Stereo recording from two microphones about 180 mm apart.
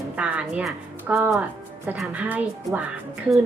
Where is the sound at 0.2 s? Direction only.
5° right (ahead or behind).